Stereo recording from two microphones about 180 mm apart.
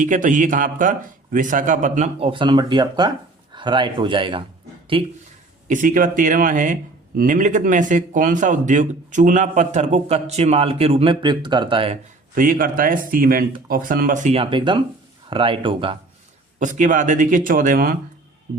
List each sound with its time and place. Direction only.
0.0 s a man's voice: 45° right (ahead or behind); by 5.1 s 30° right (ahead or behind)
5.6 s a man's voice: 45° right (ahead or behind); by 11.9 s 30° right (ahead or behind)
12.3 s a man's voice: 50° right (ahead or behind); by 16.0 s 30° right (ahead or behind)
16.6 s a man's voice: 45° right (ahead or behind)